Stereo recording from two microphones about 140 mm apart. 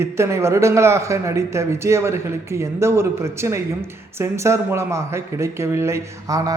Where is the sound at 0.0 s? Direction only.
20° right (ahead or behind).